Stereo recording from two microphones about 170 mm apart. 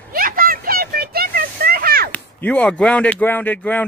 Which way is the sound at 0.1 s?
55° right (ahead or behind).